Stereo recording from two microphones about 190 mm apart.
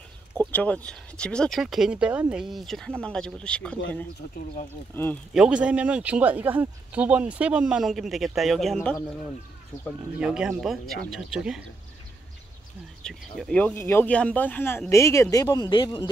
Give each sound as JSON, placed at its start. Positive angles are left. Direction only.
{"t": 0.4, "sound": "speech", "side_deg": 10}
{"t": 4.9, "sound": "speech", "side_deg": 10}
{"t": 5.3, "sound": "speech", "side_deg": -5}
{"t": 10.1, "sound": "speech", "side_deg": -5}
{"t": 13.0, "sound": "speech", "side_deg": 5}